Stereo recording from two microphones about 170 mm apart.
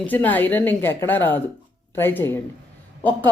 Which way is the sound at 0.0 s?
10° left (ahead or behind).